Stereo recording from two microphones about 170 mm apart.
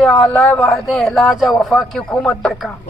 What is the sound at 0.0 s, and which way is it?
A man's voice, centre (ahead or behind).